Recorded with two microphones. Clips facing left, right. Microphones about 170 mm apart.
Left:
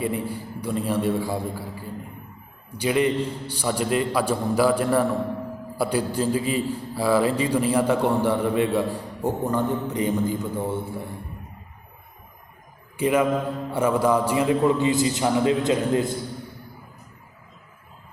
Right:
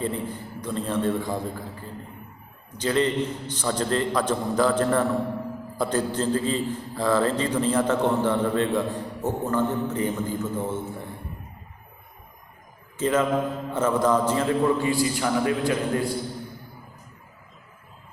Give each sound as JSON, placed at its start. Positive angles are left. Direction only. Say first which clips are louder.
{"t": 0.0, "sound": "a man's voice", "louder": "left 2 dB", "side_deg": 10}
{"t": 13.0, "sound": "a man's voice", "louder": "left 1 dB", "side_deg": 10}